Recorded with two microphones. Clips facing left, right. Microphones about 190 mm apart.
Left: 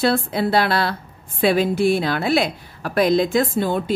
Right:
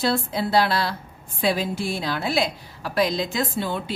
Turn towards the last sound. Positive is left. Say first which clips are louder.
# left 7 dB
turn(degrees=50)  # may be behind; listen again after turning